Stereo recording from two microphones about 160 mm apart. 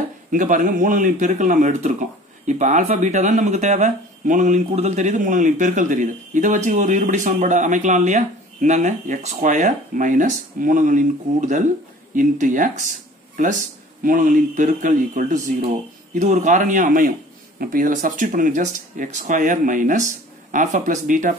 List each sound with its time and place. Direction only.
0.3 s speech: 55° right (ahead or behind)